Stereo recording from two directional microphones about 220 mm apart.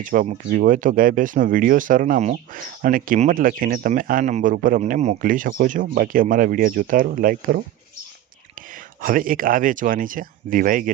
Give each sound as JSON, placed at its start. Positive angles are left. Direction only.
{"t": 0.0, "sound": "speech", "side_deg": -40}
{"t": 9.0, "sound": "speech", "side_deg": -40}